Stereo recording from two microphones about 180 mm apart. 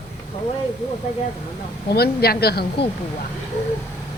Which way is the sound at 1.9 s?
60° left (ahead or behind).